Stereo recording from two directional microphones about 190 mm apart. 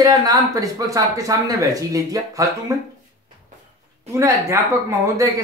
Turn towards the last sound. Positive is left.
turn(degrees=-15)  # may be behind; listen again after turning